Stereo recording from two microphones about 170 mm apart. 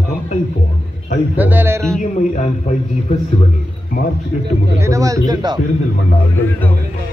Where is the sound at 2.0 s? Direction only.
45° left (ahead or behind).